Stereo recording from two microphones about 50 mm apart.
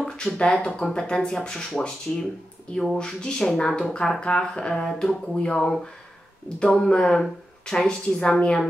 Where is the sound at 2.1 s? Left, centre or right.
Left.